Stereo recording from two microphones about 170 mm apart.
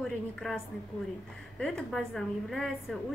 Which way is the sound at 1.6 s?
Centre (ahead or behind).